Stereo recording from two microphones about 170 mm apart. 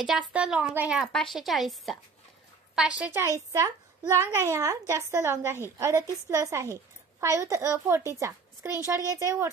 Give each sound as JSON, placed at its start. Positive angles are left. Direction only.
{"t": 0.3, "sound": "a woman's voice", "side_deg": -5}